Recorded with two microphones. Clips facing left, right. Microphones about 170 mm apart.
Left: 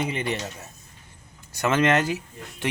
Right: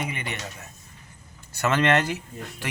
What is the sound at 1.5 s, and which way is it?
Speech, 15° left (ahead or behind).